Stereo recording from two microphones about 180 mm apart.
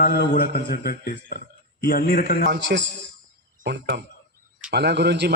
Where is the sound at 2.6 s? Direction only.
80° right.